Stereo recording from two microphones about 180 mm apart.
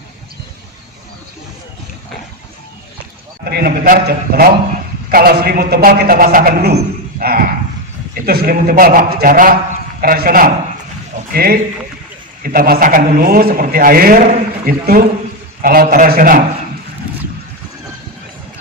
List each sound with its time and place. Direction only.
3.4 s a man's voice: 60° right (ahead or behind)